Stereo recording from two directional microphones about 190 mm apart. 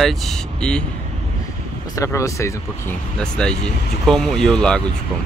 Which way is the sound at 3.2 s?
5° left (ahead or behind).